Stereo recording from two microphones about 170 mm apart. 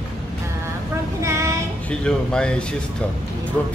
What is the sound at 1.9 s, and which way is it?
Speech, 5° left (ahead or behind).